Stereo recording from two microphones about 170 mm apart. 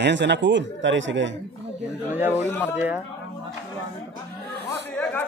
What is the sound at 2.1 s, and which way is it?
Speech, 10° right (ahead or behind).